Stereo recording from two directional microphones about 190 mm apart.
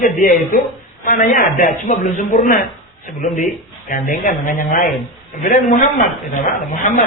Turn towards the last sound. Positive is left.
turn(degrees=45)  # may be behind; listen again after turning